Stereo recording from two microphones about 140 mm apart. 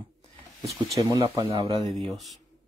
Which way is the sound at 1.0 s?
30° right (ahead or behind).